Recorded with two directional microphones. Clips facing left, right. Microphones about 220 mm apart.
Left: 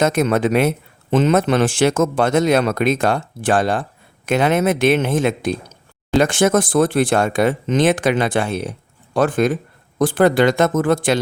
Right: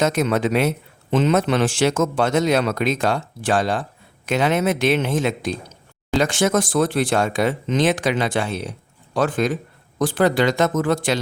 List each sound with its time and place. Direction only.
0.0 s speech: 50° left (ahead or behind)